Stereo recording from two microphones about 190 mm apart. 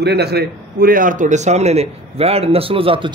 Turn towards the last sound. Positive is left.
turn(degrees=-30)  # may be behind; listen again after turning